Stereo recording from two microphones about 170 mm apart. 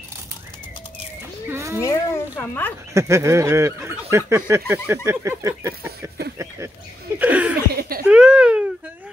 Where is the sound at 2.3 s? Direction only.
10° left (ahead or behind).